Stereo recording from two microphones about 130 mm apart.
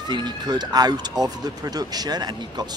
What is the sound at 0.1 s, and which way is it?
Speech, 35° right (ahead or behind).